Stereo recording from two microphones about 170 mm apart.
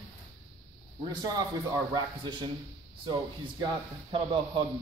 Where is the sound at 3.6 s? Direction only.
30° right (ahead or behind).